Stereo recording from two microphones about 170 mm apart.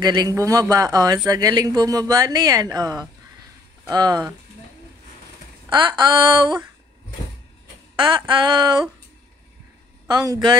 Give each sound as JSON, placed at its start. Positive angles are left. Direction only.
{"t": 0.0, "sound": "speech", "side_deg": -20}
{"t": 5.7, "sound": "speech", "side_deg": -25}
{"t": 8.0, "sound": "speech", "side_deg": -30}
{"t": 10.0, "sound": "speech", "side_deg": -25}